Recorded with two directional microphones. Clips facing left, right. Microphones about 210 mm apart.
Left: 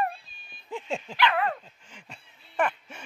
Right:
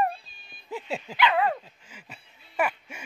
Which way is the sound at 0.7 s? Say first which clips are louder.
Even; 5° right (ahead or behind).